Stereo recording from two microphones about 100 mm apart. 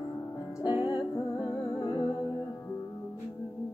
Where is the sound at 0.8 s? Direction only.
35° left (ahead or behind).